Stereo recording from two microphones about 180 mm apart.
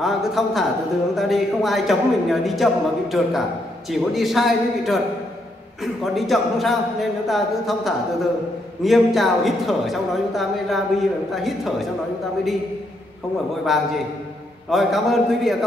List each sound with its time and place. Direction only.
0.0 s a woman's voice: centre (ahead or behind)
6.1 s a woman's voice: centre (ahead or behind)
13.7 s a woman's voice: centre (ahead or behind)